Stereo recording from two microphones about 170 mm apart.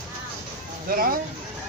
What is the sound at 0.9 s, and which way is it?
Speech, 60° right (ahead or behind).